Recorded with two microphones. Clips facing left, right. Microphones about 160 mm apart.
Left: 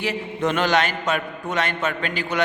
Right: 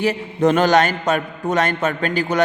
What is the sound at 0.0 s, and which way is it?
A man's voice, 40° right (ahead or behind).